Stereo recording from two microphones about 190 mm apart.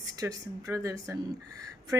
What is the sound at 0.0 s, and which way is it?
Speech, 20° right (ahead or behind).